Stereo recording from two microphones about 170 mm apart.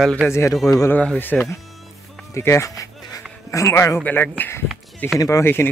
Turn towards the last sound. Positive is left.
turn(degrees=15)  # may be behind; listen again after turning